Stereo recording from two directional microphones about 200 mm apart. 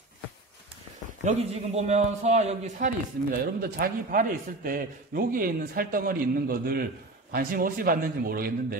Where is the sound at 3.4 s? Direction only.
50° right (ahead or behind).